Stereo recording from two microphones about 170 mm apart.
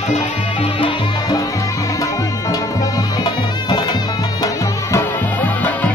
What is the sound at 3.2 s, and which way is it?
Music, 25° left (ahead or behind).